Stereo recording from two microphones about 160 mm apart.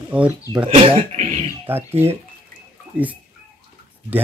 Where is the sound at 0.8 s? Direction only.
35° right (ahead or behind).